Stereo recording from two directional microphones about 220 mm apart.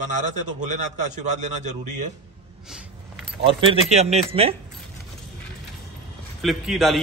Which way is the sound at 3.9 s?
30° right (ahead or behind).